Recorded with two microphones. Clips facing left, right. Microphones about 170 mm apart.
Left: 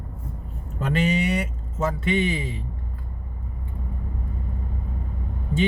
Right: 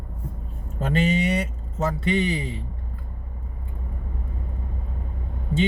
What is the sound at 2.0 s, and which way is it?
Speech, 35° right (ahead or behind).